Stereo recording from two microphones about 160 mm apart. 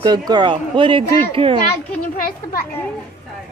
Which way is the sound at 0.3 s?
30° right (ahead or behind).